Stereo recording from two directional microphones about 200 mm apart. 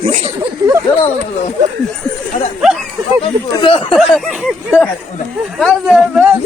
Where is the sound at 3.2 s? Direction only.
25° left (ahead or behind).